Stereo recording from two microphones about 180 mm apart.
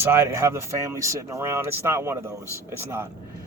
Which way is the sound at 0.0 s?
15° right (ahead or behind).